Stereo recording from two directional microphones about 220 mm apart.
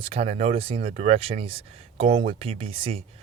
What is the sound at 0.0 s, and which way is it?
Speech, 25° right (ahead or behind).